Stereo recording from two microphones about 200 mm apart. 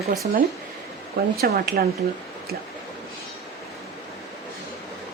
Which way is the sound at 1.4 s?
50° right (ahead or behind).